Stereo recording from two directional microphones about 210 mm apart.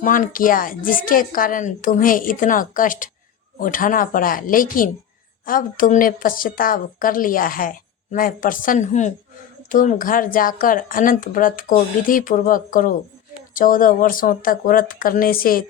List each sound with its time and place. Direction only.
0.0 s a woman's voice: 40° left (ahead or behind)